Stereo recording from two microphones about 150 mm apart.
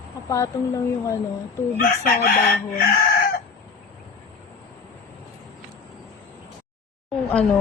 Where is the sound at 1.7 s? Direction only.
65° left (ahead or behind).